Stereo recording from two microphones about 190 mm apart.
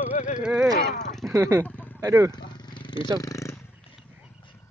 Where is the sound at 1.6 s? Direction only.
10° left (ahead or behind).